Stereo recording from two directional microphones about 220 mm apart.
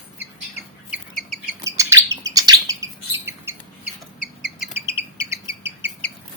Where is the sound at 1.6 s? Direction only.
15° right (ahead or behind).